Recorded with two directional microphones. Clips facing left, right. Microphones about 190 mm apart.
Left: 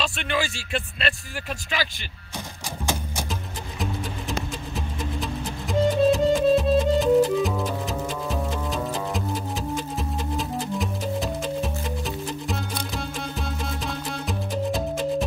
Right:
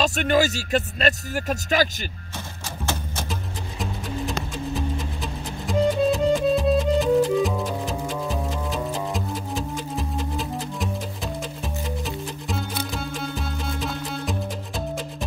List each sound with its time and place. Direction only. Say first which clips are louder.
0.0 s speech: right 7 dB; 40° right (ahead or behind)
5.2 s music: left 1 dB; centre (ahead or behind)
12.4 s music: right 1 dB; centre (ahead or behind)